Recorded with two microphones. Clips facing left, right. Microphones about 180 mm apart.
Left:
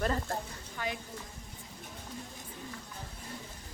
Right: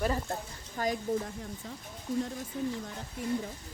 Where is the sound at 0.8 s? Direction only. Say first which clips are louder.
Right 6 dB; 40° right (ahead or behind).